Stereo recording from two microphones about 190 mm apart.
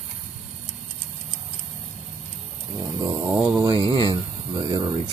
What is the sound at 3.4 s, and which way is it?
Speech, 25° right (ahead or behind).